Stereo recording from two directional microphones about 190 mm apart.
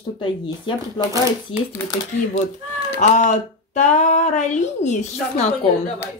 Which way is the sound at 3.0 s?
40° left (ahead or behind).